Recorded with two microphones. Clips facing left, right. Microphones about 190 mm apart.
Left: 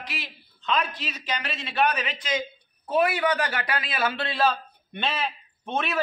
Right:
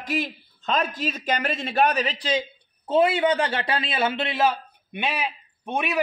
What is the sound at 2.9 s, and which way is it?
A man's voice, 25° right (ahead or behind).